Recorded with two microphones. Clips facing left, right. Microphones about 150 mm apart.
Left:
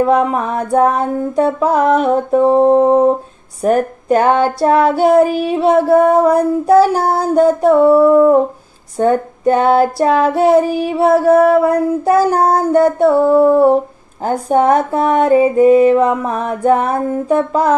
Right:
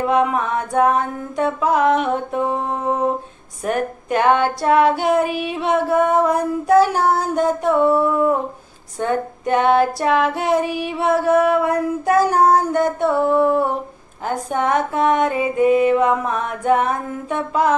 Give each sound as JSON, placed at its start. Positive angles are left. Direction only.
{"t": 0.1, "sound": "child singing", "side_deg": 35}